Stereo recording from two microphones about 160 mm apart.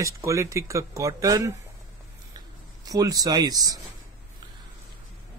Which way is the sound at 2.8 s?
25° right (ahead or behind).